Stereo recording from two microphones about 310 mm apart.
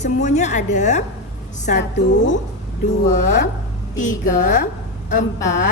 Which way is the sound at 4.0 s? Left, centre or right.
Left.